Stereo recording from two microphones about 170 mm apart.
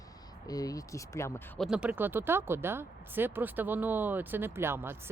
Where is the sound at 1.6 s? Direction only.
5° right (ahead or behind).